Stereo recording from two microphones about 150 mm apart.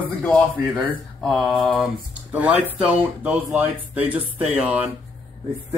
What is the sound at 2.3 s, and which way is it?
Speech, 10° right (ahead or behind).